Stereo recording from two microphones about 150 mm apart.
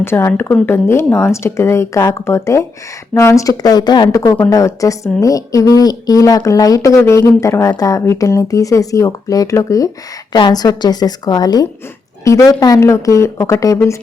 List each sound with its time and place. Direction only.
0.0 s a woman's voice: 15° left (ahead or behind)